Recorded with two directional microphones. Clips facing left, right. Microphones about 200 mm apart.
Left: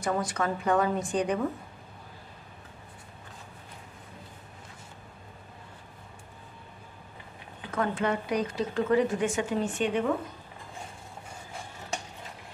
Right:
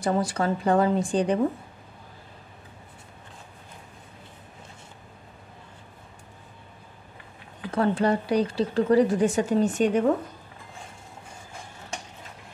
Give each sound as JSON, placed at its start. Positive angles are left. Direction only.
{"t": 0.0, "sound": "speech", "side_deg": -30}
{"t": 7.7, "sound": "speech", "side_deg": -35}